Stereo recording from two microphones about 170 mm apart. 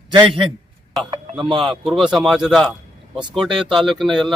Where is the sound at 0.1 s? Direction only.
30° right (ahead or behind).